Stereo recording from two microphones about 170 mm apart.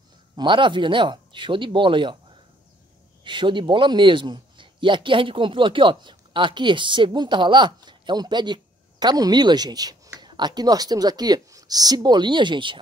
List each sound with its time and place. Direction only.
0.4 s speech: 30° right (ahead or behind)
3.3 s speech: 30° right (ahead or behind)